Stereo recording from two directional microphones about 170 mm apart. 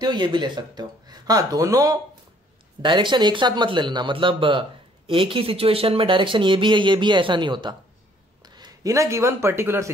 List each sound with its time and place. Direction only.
0.0 s a man's voice: 25° right (ahead or behind)